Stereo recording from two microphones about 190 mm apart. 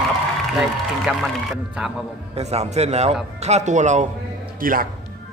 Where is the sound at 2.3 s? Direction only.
35° right (ahead or behind).